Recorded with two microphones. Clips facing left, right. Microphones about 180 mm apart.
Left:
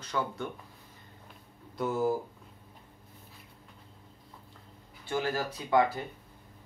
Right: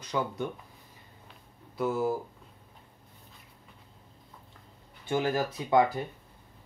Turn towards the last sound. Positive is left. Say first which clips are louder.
# right 2 dB
turn(degrees=-20)  # may be behind; listen again after turning